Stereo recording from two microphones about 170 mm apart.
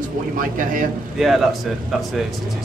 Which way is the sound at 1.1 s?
Centre (ahead or behind).